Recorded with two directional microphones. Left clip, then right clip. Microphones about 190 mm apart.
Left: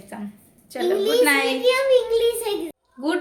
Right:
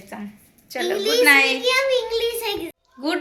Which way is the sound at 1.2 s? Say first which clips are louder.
Right 7 dB; 5° right (ahead or behind).